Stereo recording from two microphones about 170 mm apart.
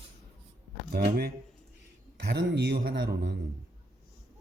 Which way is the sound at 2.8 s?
75° right (ahead or behind).